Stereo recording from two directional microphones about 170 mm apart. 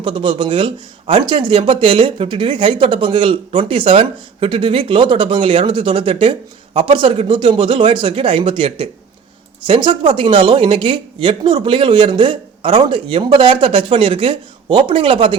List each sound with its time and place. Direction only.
0.0 s speech: 30° right (ahead or behind)